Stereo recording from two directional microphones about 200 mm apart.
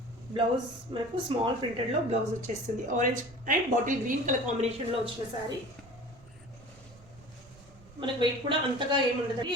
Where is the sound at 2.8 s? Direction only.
40° right (ahead or behind).